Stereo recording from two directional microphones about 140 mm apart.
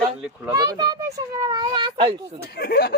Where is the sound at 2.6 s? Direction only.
90° left.